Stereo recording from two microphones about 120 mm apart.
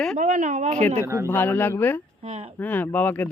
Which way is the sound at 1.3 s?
15° left (ahead or behind).